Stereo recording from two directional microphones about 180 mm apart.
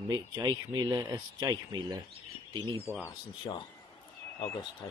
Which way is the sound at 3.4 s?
25° left (ahead or behind).